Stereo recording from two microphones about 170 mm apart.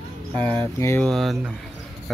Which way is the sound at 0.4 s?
30° right (ahead or behind).